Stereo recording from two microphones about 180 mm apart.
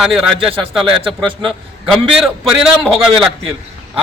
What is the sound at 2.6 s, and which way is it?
Speech, centre (ahead or behind).